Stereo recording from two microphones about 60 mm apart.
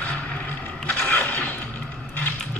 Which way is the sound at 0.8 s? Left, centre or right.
Centre.